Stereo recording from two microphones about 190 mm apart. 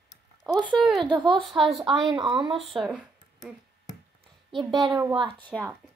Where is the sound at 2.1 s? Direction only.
25° right (ahead or behind).